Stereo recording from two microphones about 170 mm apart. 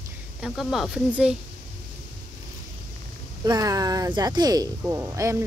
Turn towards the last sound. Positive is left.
turn(degrees=-15)  # may be behind; listen again after turning